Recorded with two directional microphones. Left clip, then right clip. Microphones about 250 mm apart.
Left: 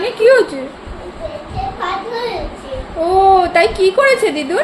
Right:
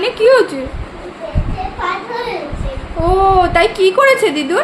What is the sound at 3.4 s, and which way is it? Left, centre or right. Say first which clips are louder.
A woman's voice: right 1 dB; centre.